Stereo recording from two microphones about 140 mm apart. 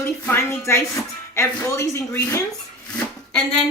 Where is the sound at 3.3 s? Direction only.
5° left (ahead or behind).